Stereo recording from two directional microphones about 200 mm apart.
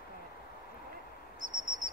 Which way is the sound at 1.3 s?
40° right (ahead or behind).